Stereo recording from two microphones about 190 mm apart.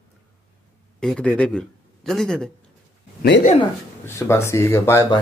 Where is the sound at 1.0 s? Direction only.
5° left (ahead or behind).